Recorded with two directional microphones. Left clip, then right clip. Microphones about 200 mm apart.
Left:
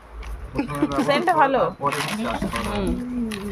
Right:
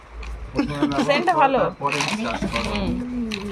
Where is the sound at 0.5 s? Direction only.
10° left (ahead or behind).